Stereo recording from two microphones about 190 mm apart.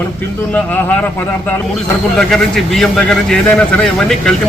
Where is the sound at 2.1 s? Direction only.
Centre (ahead or behind).